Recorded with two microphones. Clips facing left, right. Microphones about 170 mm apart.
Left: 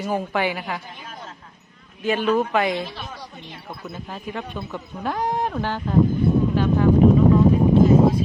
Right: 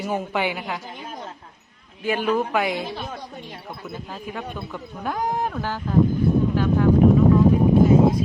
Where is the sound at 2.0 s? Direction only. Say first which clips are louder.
Left 2 dB; centre (ahead or behind).